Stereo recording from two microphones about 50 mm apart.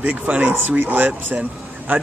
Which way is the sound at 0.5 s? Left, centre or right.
Right.